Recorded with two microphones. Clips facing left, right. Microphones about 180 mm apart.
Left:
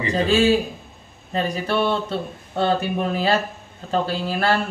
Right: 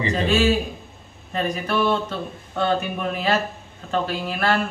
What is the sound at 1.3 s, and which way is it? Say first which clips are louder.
Speech: left 1 dB; 30° left (ahead or behind).